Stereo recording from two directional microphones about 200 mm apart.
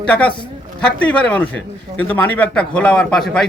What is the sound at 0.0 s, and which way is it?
A man's voice, 5° left (ahead or behind).